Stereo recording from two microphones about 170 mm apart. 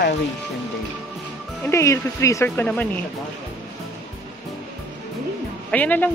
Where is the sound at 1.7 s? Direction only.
15° left (ahead or behind).